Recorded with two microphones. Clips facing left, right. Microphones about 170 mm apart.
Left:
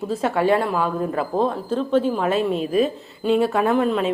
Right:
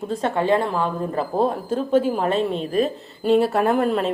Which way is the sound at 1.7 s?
10° right (ahead or behind).